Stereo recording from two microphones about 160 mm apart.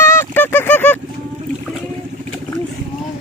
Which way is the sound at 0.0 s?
15° left (ahead or behind).